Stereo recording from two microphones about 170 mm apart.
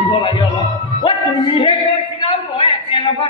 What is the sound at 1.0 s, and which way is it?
Music, 25° left (ahead or behind).